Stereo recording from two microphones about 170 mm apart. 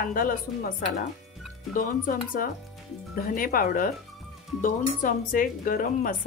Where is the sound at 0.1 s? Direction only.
55° left (ahead or behind).